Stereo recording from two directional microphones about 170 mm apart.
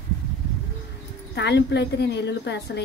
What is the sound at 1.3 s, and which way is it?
A woman's voice, 90° left.